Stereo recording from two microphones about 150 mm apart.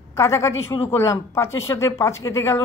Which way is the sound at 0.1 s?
20° left (ahead or behind).